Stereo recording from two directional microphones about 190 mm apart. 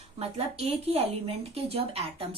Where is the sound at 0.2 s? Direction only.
30° right (ahead or behind).